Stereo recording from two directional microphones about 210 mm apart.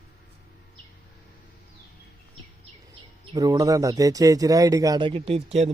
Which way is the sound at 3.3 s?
15° right (ahead or behind).